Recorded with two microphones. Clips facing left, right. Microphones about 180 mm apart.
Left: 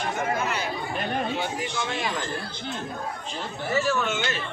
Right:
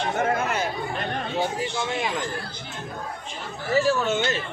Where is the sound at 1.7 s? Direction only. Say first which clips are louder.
Right 2 dB; 20° right (ahead or behind).